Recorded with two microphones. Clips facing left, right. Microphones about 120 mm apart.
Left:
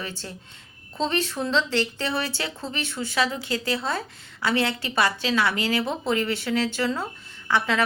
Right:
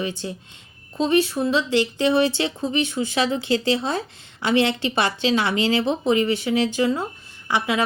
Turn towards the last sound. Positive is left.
turn(degrees=-15)  # may be behind; listen again after turning